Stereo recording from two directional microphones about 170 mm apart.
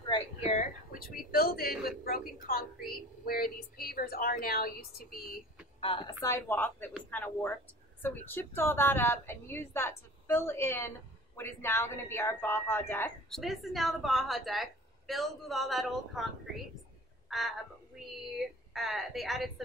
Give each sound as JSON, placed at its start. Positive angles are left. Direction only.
{"t": 0.4, "sound": "a sound", "side_deg": 40}
{"t": 0.9, "sound": "a woman's voice", "side_deg": 65}
{"t": 5.8, "sound": "a woman's voice", "side_deg": 30}
{"t": 6.2, "sound": "a woman's voice", "side_deg": 15}
{"t": 13.3, "sound": "a woman's voice", "side_deg": 0}